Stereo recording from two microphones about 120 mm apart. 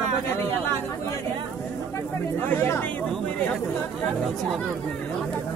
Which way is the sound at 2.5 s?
20° left (ahead or behind).